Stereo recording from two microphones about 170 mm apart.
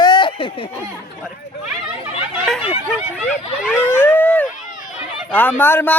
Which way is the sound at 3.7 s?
15° left (ahead or behind).